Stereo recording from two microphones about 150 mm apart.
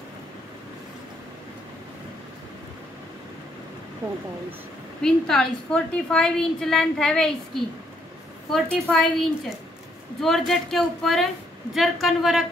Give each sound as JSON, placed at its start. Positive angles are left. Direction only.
{"t": 4.0, "sound": "speech", "side_deg": -20}
{"t": 5.0, "sound": "a woman's voice", "side_deg": 5}